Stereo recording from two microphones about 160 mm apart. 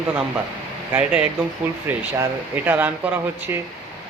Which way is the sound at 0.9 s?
5° right (ahead or behind).